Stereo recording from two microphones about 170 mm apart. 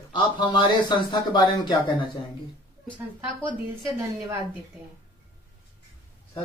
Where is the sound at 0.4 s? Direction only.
30° left (ahead or behind).